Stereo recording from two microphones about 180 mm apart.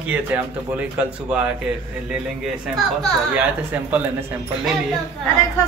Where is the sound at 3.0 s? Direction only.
10° right (ahead or behind).